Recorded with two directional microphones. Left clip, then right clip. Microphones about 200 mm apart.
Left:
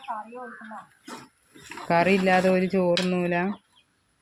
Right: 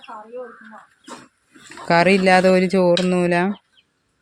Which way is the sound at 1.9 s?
50° right (ahead or behind).